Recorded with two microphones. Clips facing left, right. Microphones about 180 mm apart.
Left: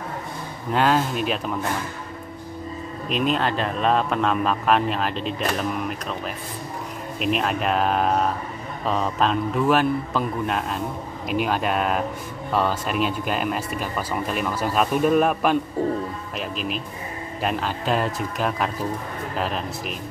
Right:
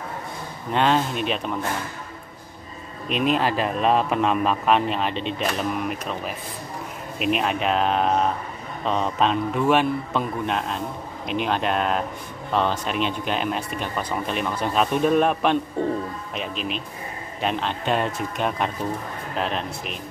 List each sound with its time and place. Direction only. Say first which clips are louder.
0.7 s a man's voice: even; 5° left (ahead or behind)
3.1 s a man's voice: right 1 dB; centre (ahead or behind)